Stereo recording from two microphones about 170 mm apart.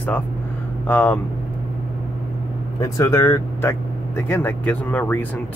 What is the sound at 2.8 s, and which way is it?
Speech, 20° left (ahead or behind).